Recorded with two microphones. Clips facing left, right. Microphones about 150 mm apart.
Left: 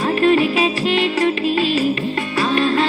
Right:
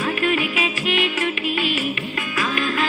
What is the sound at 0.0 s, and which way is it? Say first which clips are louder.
Music: left 7 dB; 35° left (ahead or behind).